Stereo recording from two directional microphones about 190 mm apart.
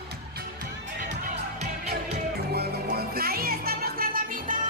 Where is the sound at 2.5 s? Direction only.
55° right (ahead or behind).